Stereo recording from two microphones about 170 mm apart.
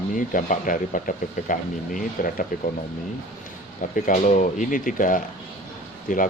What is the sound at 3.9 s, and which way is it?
Speech, 50° left (ahead or behind).